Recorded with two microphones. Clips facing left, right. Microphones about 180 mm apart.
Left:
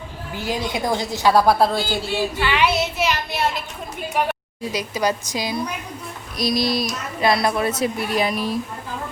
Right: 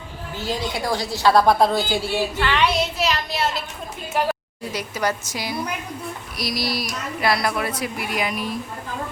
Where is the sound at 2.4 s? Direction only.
5° left (ahead or behind).